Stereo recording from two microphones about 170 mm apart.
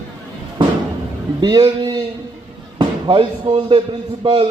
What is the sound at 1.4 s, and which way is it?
Speech, 25° right (ahead or behind).